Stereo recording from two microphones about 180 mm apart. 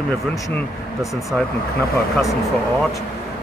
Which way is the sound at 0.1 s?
Centre (ahead or behind).